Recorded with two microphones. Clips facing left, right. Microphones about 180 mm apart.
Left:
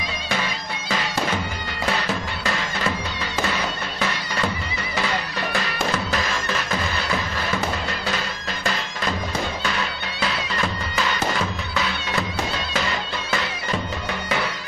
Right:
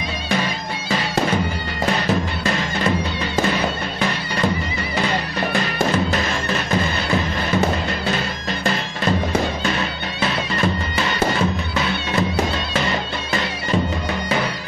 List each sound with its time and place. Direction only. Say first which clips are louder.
6.1 s music: right 3 dB; 30° right (ahead or behind)
9.7 s music: right 4 dB; 25° right (ahead or behind)